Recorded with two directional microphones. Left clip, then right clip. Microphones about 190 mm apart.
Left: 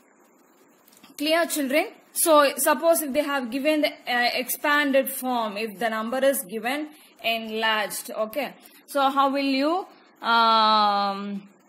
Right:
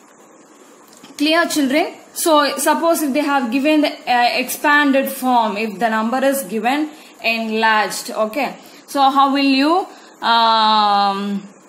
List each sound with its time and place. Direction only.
1.1 s a woman's voice: 45° left (ahead or behind)